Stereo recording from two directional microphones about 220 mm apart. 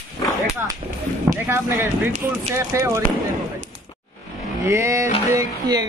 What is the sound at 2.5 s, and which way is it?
Speech, 15° right (ahead or behind).